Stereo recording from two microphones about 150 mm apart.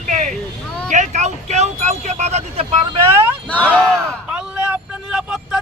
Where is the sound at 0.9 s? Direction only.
50° right (ahead or behind).